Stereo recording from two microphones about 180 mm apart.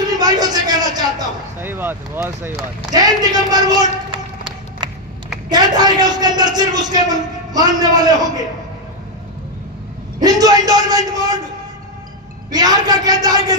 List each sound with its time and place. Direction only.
0.0 s a sound: 20° right (ahead or behind)
1.6 s a man's voice: 10° right (ahead or behind)
10.2 s a man's voice: 20° right (ahead or behind)
12.4 s a man's voice: 20° right (ahead or behind)